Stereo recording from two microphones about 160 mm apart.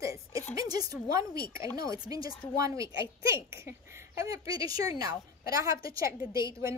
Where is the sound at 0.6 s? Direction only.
25° right (ahead or behind).